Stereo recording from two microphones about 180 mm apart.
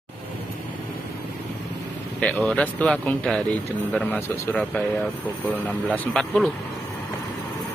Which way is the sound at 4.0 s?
10° left (ahead or behind).